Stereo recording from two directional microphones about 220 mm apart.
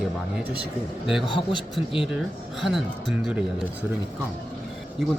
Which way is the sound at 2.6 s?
Centre (ahead or behind).